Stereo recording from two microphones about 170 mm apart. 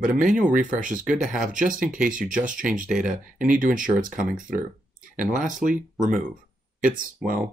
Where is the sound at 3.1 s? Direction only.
5° right (ahead or behind).